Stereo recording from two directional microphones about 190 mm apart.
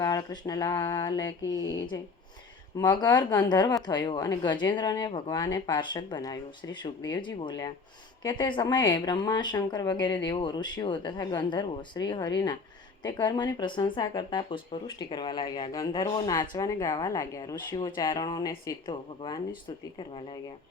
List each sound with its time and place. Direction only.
0.0 s speech: 20° left (ahead or behind)